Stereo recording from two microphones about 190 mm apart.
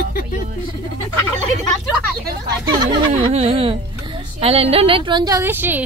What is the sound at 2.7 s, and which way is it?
Speech, 25° right (ahead or behind).